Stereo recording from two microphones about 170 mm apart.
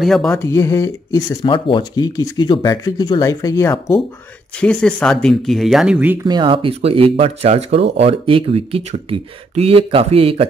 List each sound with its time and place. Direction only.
0.0 s speech: centre (ahead or behind)
0.4 s speech: 15° left (ahead or behind)
1.4 s speech: 30° left (ahead or behind)
4.6 s speech: 5° left (ahead or behind)
6.2 s speech: 25° right (ahead or behind)